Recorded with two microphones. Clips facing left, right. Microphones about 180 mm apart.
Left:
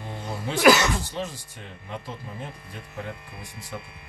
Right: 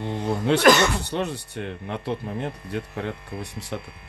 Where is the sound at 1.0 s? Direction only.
65° right (ahead or behind).